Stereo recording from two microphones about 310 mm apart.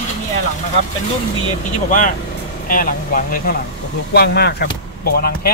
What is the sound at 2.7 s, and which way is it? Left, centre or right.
Speech, left.